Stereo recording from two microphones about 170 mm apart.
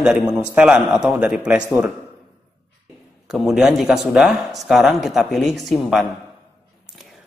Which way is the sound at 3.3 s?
Centre (ahead or behind).